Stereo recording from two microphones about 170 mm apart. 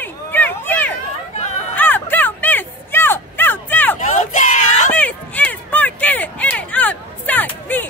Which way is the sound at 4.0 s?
50° left (ahead or behind).